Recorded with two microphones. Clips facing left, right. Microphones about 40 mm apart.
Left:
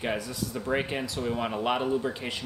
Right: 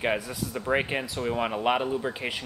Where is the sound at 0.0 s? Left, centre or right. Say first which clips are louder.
Right 3 dB; right.